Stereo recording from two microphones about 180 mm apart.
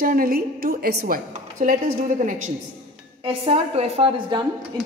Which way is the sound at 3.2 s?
35° right (ahead or behind).